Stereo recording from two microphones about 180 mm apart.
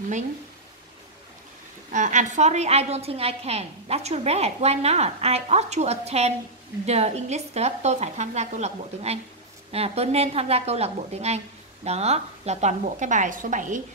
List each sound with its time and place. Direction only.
1.9 s a woman's voice: 40° right (ahead or behind)